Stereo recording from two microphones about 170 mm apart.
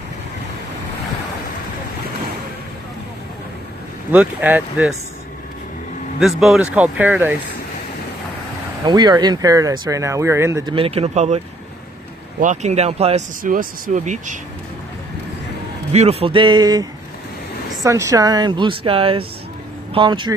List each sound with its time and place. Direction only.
4.1 s speech: 10° right (ahead or behind)
6.1 s speech: centre (ahead or behind)
8.8 s speech: 25° right (ahead or behind)
10.7 s speech: 35° right (ahead or behind)
13.4 s speech: 55° right (ahead or behind)
15.9 s speech: 40° right (ahead or behind)
17.8 s speech: 20° right (ahead or behind)